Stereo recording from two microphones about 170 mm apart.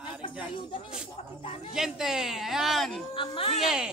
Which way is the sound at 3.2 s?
35° left (ahead or behind).